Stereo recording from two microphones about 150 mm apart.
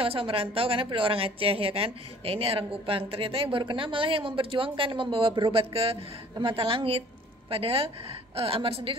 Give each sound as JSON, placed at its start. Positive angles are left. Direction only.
{"t": 0.0, "sound": "speech", "side_deg": -40}